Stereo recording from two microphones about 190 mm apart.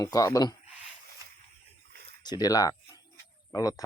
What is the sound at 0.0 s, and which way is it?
Speech, 20° left (ahead or behind).